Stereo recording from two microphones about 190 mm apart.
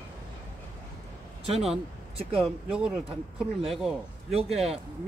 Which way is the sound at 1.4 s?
30° right (ahead or behind).